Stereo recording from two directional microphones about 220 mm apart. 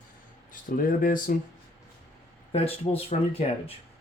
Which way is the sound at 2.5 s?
25° left (ahead or behind).